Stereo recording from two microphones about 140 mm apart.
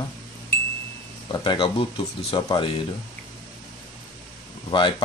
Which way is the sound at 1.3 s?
35° left (ahead or behind).